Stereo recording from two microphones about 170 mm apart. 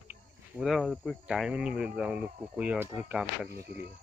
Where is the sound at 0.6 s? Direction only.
Centre (ahead or behind).